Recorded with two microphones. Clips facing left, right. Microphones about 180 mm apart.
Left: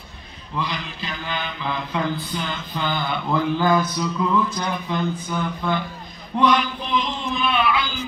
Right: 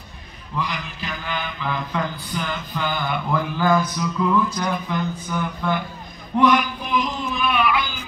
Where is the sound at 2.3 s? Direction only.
20° left (ahead or behind).